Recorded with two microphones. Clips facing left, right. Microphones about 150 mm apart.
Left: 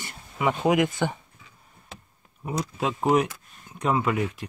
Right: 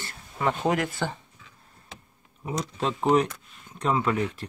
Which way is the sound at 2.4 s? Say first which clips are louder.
Left 1 dB; 5° left (ahead or behind).